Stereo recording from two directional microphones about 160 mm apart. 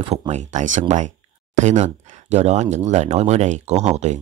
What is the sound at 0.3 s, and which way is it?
Speech, 50° right (ahead or behind).